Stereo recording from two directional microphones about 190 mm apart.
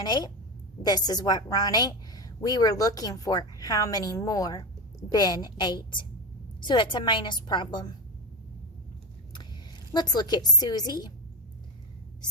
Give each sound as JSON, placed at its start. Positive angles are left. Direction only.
{"t": 0.0, "sound": "a woman's voice", "side_deg": 20}
{"t": 9.9, "sound": "a woman's voice", "side_deg": 20}